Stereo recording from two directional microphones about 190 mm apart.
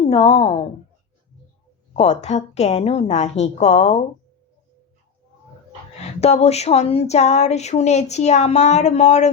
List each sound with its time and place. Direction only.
0.0 s a woman's voice: 30° left (ahead or behind)
2.0 s speech: 35° left (ahead or behind)
6.1 s speech: 35° left (ahead or behind)